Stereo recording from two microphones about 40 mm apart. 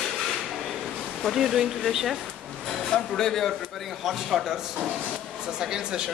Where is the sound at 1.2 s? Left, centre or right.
Centre.